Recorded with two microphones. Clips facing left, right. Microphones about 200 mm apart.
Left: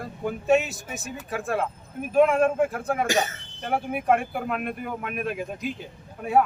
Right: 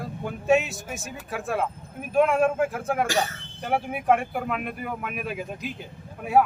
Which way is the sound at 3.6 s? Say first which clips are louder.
Even; centre (ahead or behind).